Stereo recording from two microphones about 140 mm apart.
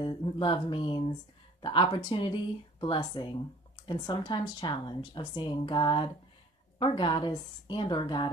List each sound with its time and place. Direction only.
0.0 s speech: 35° left (ahead or behind)